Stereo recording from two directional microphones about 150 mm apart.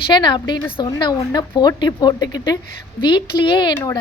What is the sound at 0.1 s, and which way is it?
Speech, 30° left (ahead or behind).